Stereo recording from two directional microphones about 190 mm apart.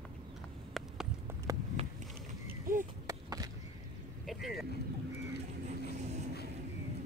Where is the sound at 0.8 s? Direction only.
Centre (ahead or behind).